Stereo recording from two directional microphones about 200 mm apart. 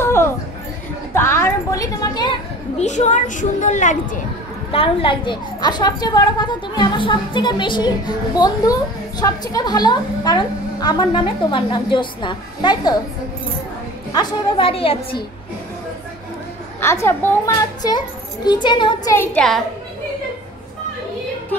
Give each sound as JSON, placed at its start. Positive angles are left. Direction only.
{"t": 0.0, "sound": "a sound", "side_deg": 10}
{"t": 2.8, "sound": "a woman's voice", "side_deg": 35}
{"t": 4.7, "sound": "a woman's voice", "side_deg": 25}
{"t": 9.2, "sound": "a woman's voice", "side_deg": 20}
{"t": 14.1, "sound": "a woman's voice", "side_deg": 30}
{"t": 16.8, "sound": "a woman's voice", "side_deg": 15}
{"t": 19.1, "sound": "a woman's voice", "side_deg": 5}